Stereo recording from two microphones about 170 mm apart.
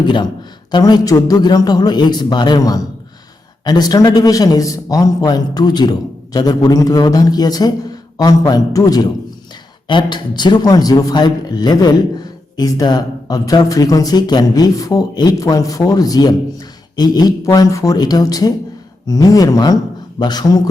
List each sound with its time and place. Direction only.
0.7 s a man's voice: 25° left (ahead or behind)